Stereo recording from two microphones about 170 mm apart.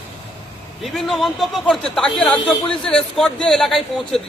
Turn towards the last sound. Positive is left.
turn(degrees=0)  # may be behind; listen again after turning